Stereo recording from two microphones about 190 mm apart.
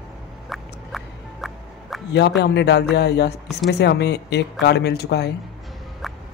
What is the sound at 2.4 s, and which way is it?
A man's voice, 65° left (ahead or behind).